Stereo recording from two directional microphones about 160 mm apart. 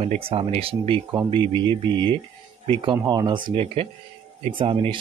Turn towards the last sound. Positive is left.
turn(degrees=-35)  # may be behind; listen again after turning